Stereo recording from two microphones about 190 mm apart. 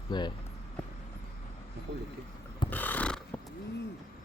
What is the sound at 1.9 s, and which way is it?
Speech, 65° right (ahead or behind).